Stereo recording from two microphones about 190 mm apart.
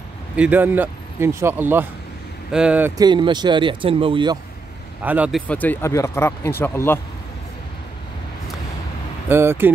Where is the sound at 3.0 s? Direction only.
25° right (ahead or behind).